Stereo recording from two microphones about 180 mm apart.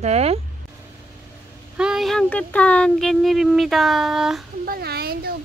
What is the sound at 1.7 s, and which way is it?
Speech, 5° right (ahead or behind).